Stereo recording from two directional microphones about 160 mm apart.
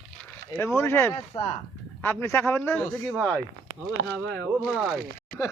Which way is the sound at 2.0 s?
15° left (ahead or behind).